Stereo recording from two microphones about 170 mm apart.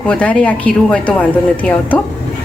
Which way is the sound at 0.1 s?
5° left (ahead or behind).